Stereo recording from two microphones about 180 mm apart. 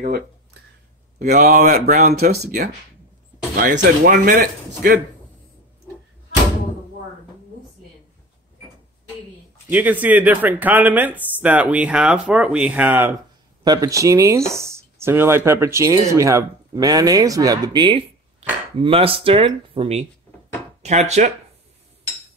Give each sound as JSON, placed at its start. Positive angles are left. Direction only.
{"t": 1.2, "sound": "speech", "side_deg": -50}
{"t": 3.5, "sound": "speech", "side_deg": -50}
{"t": 9.7, "sound": "speech", "side_deg": -10}
{"t": 13.7, "sound": "speech", "side_deg": -20}